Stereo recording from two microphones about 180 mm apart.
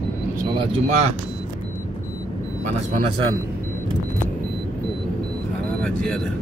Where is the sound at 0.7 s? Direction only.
40° right (ahead or behind).